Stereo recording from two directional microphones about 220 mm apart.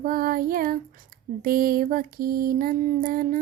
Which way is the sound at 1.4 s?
40° right (ahead or behind).